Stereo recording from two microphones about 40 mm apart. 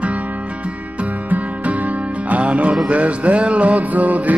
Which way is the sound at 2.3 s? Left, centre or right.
Right.